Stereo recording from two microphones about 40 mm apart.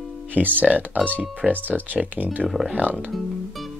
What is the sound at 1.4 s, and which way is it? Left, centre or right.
Speech, centre.